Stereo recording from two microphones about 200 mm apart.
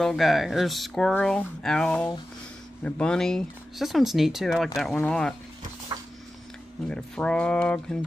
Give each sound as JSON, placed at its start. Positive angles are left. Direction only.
{"t": 0.0, "sound": "speech", "side_deg": 0}
{"t": 5.9, "sound": "a sound", "side_deg": -25}
{"t": 6.9, "sound": "speech", "side_deg": 5}